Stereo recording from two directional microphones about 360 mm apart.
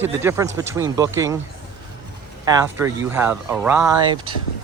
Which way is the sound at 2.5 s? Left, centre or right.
Centre.